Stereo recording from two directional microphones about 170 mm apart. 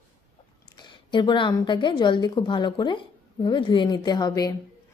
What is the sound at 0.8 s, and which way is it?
A woman's voice, 25° left (ahead or behind).